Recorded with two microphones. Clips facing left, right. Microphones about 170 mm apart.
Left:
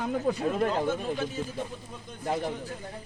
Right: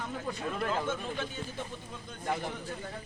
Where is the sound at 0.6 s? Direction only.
35° left (ahead or behind).